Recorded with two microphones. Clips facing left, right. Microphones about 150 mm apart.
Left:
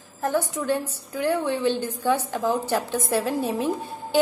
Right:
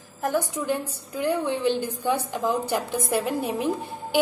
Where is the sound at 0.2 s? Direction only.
15° right (ahead or behind).